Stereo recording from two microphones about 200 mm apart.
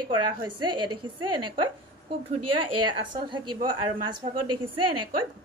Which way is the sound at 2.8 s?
25° right (ahead or behind).